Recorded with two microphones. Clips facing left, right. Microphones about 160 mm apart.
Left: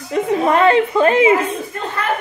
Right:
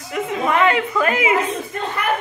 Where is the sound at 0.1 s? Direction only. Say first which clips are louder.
Left 5 dB; 35° left (ahead or behind).